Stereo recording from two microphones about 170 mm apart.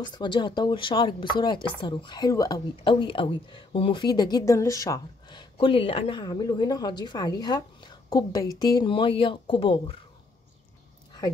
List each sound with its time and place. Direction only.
0.0 s speech: 25° left (ahead or behind)